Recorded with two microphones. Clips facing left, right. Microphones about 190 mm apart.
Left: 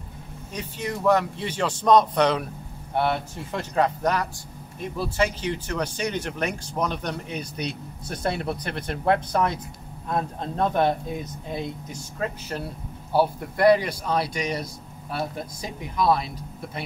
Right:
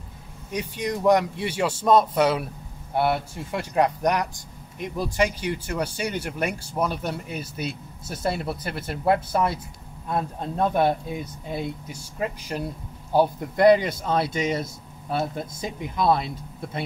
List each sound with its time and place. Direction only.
0.5 s speech: 15° right (ahead or behind)